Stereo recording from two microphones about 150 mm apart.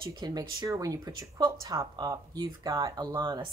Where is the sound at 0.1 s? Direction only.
25° right (ahead or behind).